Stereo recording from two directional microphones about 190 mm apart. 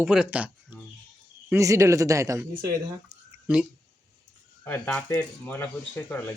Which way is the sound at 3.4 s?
5° right (ahead or behind).